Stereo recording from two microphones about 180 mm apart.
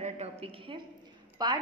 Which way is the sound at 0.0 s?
35° right (ahead or behind).